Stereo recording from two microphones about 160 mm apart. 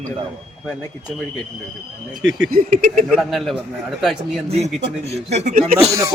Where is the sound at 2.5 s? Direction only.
55° right (ahead or behind).